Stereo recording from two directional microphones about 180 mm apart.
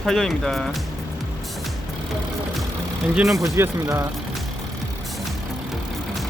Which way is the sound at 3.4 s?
15° right (ahead or behind).